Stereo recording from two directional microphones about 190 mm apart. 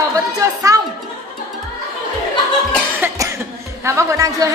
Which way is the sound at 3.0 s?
15° right (ahead or behind).